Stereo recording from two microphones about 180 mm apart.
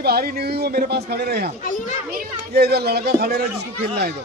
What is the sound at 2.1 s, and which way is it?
Speech, 60° right (ahead or behind).